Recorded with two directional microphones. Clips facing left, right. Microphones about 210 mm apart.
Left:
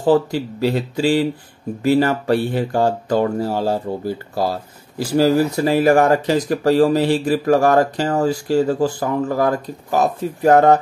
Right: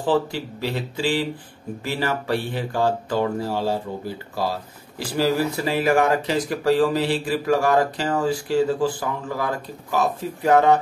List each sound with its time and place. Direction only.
0.0 s speech: 40° left (ahead or behind)
4.9 s speech: 45° left (ahead or behind)